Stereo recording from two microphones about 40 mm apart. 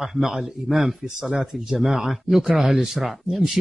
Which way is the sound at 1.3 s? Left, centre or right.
Centre.